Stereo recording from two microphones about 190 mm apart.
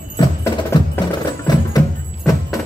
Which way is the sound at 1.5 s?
20° left (ahead or behind).